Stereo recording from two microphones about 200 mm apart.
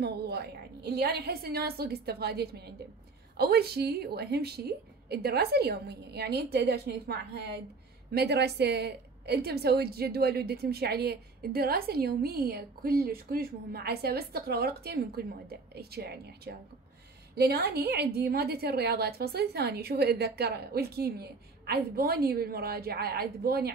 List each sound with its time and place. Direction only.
0.0 s a woman's voice: 55° right (ahead or behind)